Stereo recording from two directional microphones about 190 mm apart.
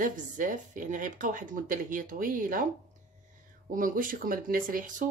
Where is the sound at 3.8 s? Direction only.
45° right (ahead or behind).